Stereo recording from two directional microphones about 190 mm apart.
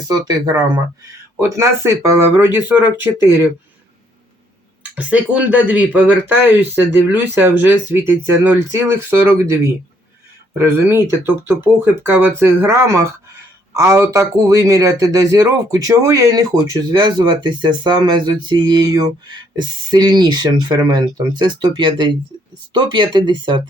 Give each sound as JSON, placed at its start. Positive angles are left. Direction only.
{"t": 0.1, "sound": "a man's voice", "side_deg": -20}
{"t": 4.9, "sound": "speech", "side_deg": -5}
{"t": 10.6, "sound": "a man's voice", "side_deg": -10}